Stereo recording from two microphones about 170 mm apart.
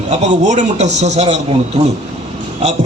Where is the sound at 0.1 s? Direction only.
45° right (ahead or behind).